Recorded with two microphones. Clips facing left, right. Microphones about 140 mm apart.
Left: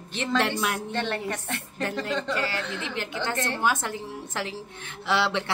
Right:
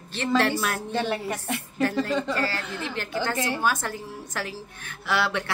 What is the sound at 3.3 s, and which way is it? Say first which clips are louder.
Speech: right 2 dB; 5° right (ahead or behind).